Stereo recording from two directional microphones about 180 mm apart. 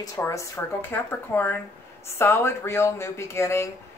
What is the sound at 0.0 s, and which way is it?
Speech, 20° left (ahead or behind).